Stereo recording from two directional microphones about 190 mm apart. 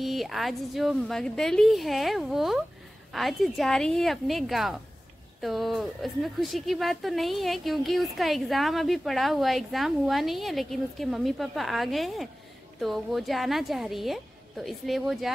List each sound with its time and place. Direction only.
0.0 s a woman's voice: centre (ahead or behind)